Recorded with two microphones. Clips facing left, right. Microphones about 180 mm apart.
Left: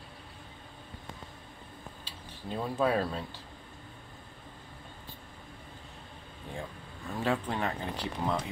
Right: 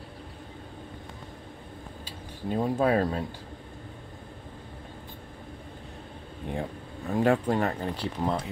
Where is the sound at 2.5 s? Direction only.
45° right (ahead or behind).